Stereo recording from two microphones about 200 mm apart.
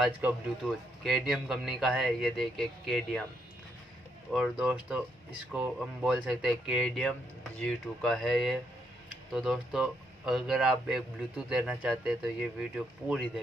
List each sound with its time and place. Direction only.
0.0 s speech: centre (ahead or behind)
4.3 s speech: centre (ahead or behind)